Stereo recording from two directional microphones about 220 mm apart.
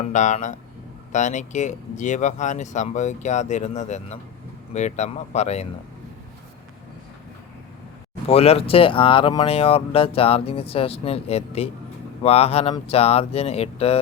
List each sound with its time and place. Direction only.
0.0 s speech: 35° left (ahead or behind)
8.3 s speech: 25° left (ahead or behind)